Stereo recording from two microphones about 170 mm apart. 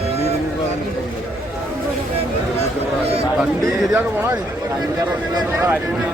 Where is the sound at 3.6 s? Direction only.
15° right (ahead or behind).